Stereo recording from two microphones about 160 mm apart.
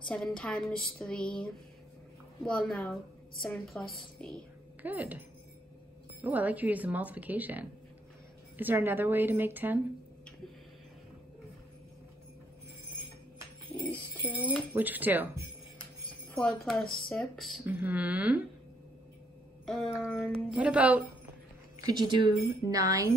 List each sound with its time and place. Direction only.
0.1 s a woman's voice: 5° left (ahead or behind)
4.8 s speech: 10° right (ahead or behind)
6.2 s speech: 10° right (ahead or behind)
13.7 s music: 10° left (ahead or behind)
14.7 s speech: 10° right (ahead or behind)
16.3 s a woman's voice: 5° left (ahead or behind)
17.6 s speech: 10° right (ahead or behind)
19.6 s a woman's voice: 5° left (ahead or behind)
21.8 s speech: 25° right (ahead or behind)